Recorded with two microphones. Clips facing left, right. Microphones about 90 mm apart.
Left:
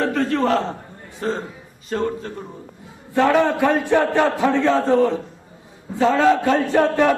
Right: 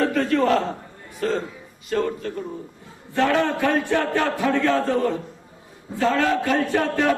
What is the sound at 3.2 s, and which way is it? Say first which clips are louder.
A man's voice: left 4 dB; 15° left (ahead or behind).